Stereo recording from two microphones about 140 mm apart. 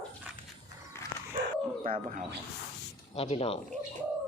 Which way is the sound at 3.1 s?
45° left (ahead or behind).